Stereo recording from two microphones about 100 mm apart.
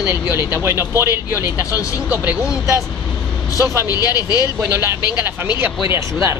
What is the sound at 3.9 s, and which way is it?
Speech, 40° left (ahead or behind).